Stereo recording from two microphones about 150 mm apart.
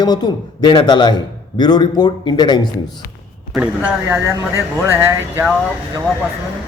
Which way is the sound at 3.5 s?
5° right (ahead or behind).